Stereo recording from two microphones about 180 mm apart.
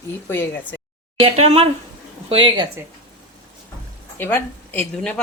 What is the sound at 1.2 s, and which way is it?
A woman's voice, 35° right (ahead or behind).